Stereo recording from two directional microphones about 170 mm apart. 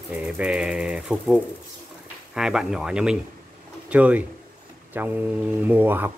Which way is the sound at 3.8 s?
10° right (ahead or behind).